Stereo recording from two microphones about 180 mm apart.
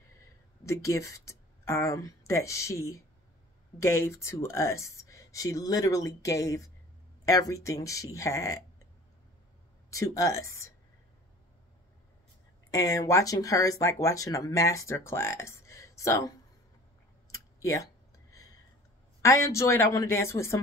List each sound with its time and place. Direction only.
0.7 s speech: 15° left (ahead or behind)
9.8 s speech: 15° left (ahead or behind)
12.7 s speech: 20° left (ahead or behind)
17.3 s a sound: 15° left (ahead or behind)
19.2 s speech: 15° left (ahead or behind)